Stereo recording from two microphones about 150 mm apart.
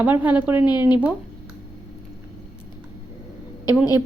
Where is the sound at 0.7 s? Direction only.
30° left (ahead or behind).